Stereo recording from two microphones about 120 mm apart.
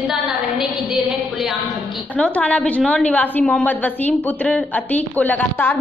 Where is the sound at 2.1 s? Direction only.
10° left (ahead or behind).